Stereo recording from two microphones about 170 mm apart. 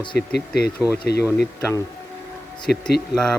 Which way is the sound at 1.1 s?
70° left (ahead or behind).